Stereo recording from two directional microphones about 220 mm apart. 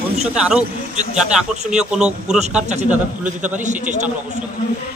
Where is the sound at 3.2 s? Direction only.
35° right (ahead or behind).